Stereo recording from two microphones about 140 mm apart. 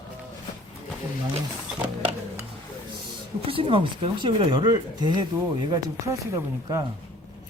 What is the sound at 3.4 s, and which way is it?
Speech, 40° right (ahead or behind).